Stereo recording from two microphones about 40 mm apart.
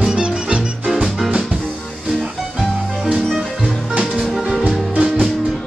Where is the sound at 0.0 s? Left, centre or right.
Right.